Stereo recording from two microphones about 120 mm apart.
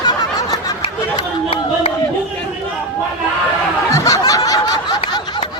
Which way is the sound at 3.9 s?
30° left (ahead or behind).